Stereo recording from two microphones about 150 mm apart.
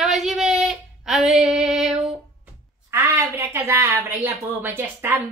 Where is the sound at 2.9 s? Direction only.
15° right (ahead or behind).